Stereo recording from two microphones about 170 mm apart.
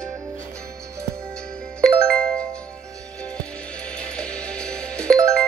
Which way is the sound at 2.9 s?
20° right (ahead or behind).